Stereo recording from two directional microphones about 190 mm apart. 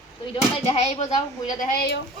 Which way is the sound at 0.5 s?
35° left (ahead or behind).